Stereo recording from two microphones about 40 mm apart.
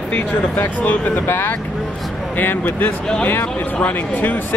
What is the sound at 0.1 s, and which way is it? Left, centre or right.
Speech, left.